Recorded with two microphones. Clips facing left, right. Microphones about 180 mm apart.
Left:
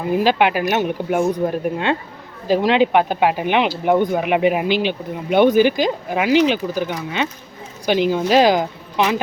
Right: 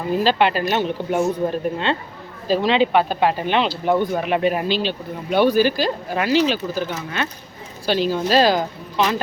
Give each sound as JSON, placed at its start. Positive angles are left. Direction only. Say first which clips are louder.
{"t": 0.1, "sound": "speech", "louder": "left 2 dB", "side_deg": 15}